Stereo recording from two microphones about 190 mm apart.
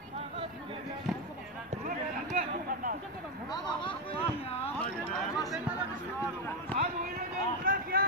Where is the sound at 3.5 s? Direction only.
25° left (ahead or behind).